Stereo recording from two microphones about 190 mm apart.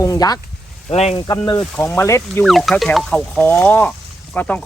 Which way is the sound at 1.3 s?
20° left (ahead or behind).